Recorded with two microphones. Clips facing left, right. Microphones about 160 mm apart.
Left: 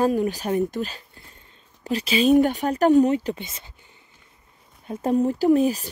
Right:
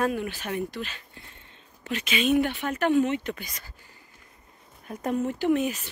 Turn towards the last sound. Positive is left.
turn(degrees=35)  # may be behind; listen again after turning